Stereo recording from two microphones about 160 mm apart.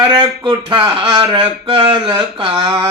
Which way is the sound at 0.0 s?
30° right (ahead or behind).